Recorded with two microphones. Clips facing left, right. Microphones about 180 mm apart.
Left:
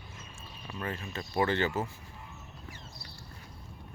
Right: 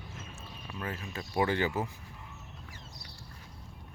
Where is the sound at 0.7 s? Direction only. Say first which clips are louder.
Left 2 dB; 5° right (ahead or behind).